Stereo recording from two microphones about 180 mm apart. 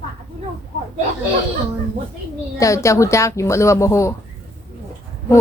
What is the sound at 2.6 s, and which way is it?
Speech, 15° left (ahead or behind).